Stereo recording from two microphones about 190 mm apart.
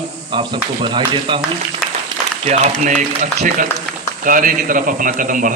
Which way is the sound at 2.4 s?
40° right (ahead or behind).